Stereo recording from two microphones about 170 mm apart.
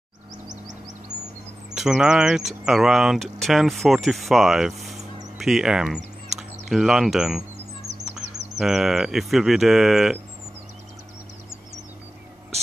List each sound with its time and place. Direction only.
0.5 s vehicle: 45° right (ahead or behind)
1.7 s speech: 5° right (ahead or behind)
5.9 s a sound: 40° right (ahead or behind)
6.7 s speech: 5° right (ahead or behind)
7.9 s bird: 90° right
8.5 s speech: centre (ahead or behind)